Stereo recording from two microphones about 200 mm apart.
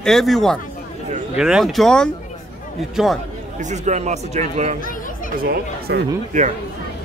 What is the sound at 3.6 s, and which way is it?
Speech, 35° right (ahead or behind).